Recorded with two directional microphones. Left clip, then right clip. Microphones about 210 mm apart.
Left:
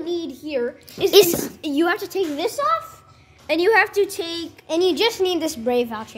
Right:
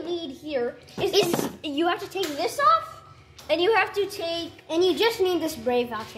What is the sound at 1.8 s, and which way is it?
A woman's voice, 60° left (ahead or behind).